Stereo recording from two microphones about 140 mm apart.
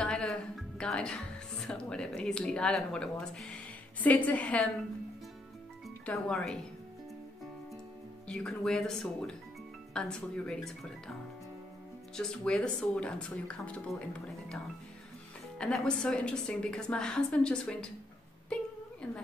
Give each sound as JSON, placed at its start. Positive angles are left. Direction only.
{"t": 0.0, "sound": "music", "side_deg": 5}
{"t": 1.7, "sound": "a woman's voice", "side_deg": 5}
{"t": 6.0, "sound": "speech", "side_deg": 5}
{"t": 8.3, "sound": "a woman's voice", "side_deg": 5}
{"t": 12.2, "sound": "a woman's voice", "side_deg": 5}
{"t": 15.5, "sound": "a woman's voice", "side_deg": 5}
{"t": 18.5, "sound": "a sound", "side_deg": 5}